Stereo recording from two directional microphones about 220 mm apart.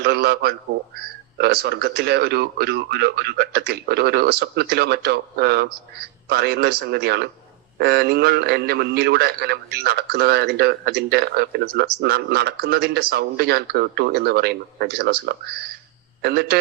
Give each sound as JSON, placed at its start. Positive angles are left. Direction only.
{"t": 0.0, "sound": "a man's voice", "side_deg": -45}